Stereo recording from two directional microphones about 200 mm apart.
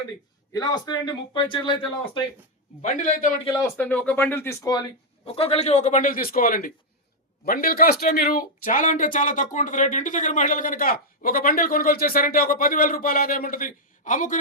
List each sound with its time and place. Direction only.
0.5 s speech: 20° left (ahead or behind)
2.8 s a man's voice: 40° left (ahead or behind)
3.6 s speech: 10° left (ahead or behind); by 14.3 s 40° left (ahead or behind)